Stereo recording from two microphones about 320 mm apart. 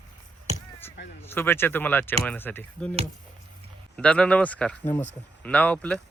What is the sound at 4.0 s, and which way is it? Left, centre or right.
Speech, centre.